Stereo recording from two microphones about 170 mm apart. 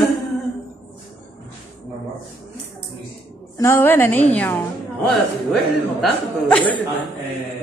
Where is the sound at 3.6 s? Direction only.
15° left (ahead or behind).